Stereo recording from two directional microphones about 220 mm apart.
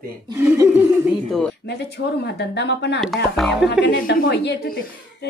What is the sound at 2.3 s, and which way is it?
Speech, 50° left (ahead or behind).